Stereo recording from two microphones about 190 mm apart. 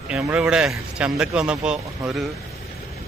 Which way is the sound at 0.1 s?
5° right (ahead or behind).